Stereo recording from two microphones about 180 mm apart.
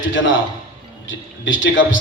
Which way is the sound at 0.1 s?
90° left.